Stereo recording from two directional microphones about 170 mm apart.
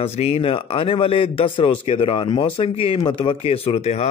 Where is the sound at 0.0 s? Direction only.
35° left (ahead or behind).